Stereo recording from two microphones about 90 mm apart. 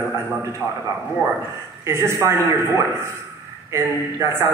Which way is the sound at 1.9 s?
35° right (ahead or behind).